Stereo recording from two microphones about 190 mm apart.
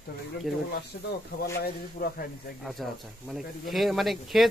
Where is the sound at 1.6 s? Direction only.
55° left (ahead or behind).